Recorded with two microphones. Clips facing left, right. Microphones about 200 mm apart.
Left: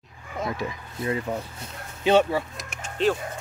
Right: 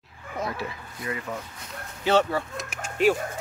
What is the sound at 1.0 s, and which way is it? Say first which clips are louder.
Speech: left 5 dB; 30° left (ahead or behind).